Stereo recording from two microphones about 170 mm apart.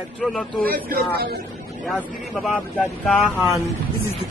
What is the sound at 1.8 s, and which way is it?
Speech, centre (ahead or behind).